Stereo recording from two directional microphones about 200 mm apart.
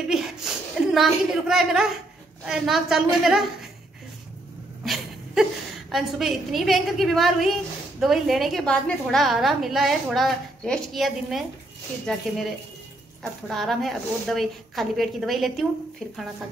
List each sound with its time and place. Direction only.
0.1 s a woman's voice: centre (ahead or behind)
4.8 s a woman's voice: centre (ahead or behind)